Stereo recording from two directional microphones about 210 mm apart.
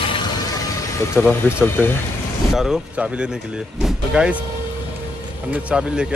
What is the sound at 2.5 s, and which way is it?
Speech, centre (ahead or behind).